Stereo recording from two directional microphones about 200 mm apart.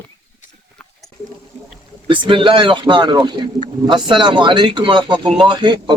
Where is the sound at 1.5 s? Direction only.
35° right (ahead or behind).